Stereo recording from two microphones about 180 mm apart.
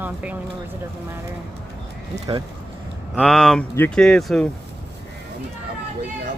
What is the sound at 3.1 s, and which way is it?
Speech, 5° left (ahead or behind).